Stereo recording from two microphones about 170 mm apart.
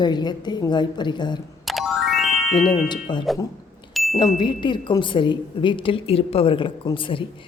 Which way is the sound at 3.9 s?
Centre (ahead or behind).